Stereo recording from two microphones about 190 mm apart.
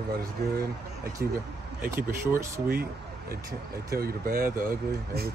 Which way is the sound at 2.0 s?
15° right (ahead or behind).